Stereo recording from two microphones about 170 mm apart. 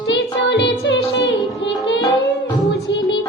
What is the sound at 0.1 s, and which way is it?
Music, 90° left.